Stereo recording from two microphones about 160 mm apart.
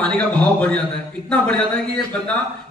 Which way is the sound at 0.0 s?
5° left (ahead or behind).